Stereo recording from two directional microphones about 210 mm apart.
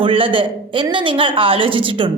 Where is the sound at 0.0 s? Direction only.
25° right (ahead or behind).